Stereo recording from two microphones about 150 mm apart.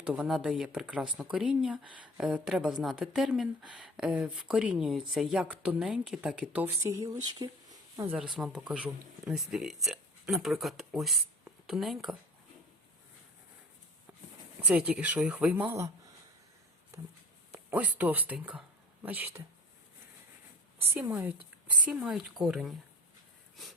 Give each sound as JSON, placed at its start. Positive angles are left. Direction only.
{"t": 0.0, "sound": "speech", "side_deg": -5}
{"t": 7.0, "sound": "speech", "side_deg": -25}
{"t": 8.3, "sound": "speech", "side_deg": -5}
{"t": 14.6, "sound": "speech", "side_deg": -5}
{"t": 17.5, "sound": "speech", "side_deg": -10}
{"t": 20.9, "sound": "speech", "side_deg": -15}